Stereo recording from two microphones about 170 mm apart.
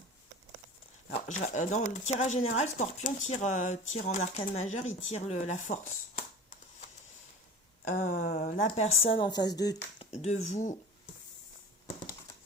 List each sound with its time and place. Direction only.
1.1 s speech: 40° left (ahead or behind)
7.9 s speech: 45° left (ahead or behind)
8.6 s speech: 35° left (ahead or behind)
10.0 s speech: 40° left (ahead or behind)